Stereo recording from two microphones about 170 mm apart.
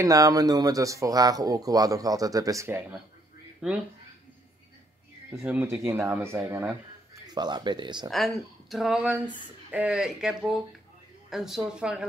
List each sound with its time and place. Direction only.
0.0 s speech: 20° right (ahead or behind)
3.6 s speech: 5° right (ahead or behind)
5.3 s speech: 10° right (ahead or behind)
7.3 s speech: 25° right (ahead or behind)
8.1 s speech: centre (ahead or behind)